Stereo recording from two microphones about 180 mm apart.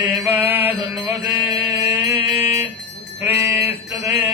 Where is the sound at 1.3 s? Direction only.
15° right (ahead or behind).